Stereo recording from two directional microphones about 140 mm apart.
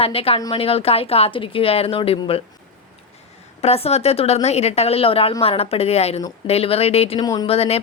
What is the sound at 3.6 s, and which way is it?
Speech, 45° left (ahead or behind).